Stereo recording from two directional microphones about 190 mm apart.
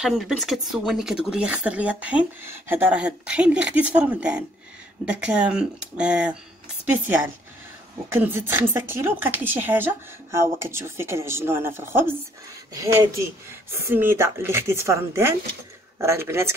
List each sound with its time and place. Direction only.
0.0 s speech: centre (ahead or behind)
8.1 s speech: 10° right (ahead or behind)
13.5 s speech: 15° right (ahead or behind)